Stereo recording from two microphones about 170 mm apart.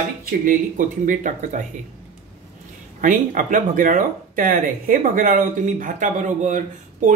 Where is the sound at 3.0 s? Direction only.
50° right (ahead or behind).